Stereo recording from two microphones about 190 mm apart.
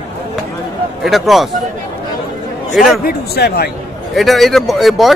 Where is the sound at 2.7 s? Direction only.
Centre (ahead or behind).